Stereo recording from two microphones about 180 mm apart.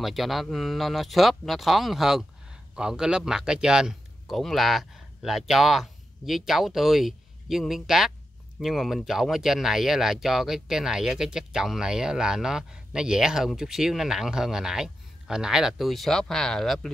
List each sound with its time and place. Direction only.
0.0 s a man's voice: centre (ahead or behind)